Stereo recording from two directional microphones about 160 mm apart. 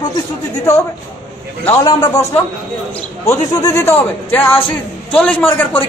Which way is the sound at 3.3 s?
20° left (ahead or behind).